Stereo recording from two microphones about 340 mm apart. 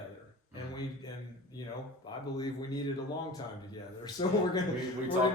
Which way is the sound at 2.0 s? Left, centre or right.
Centre.